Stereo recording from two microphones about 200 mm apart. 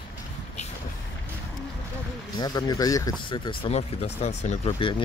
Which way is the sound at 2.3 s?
20° left (ahead or behind).